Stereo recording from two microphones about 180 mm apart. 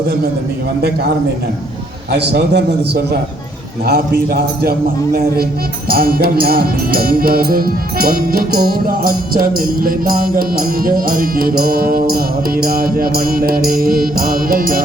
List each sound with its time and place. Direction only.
2.1 s a man's voice: 65° right (ahead or behind)
5.9 s music: 55° right (ahead or behind)